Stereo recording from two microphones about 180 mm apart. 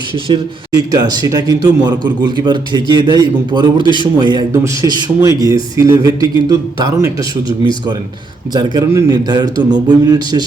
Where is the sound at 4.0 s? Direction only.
25° right (ahead or behind).